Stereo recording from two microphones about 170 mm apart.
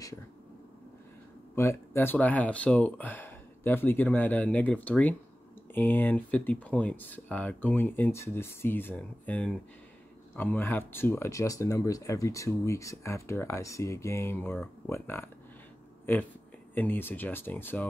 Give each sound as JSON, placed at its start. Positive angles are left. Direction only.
{"t": 1.5, "sound": "speech", "side_deg": 15}
{"t": 16.7, "sound": "speech", "side_deg": 10}